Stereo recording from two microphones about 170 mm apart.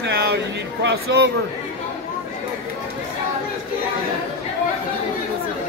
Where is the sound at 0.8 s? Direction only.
90° right.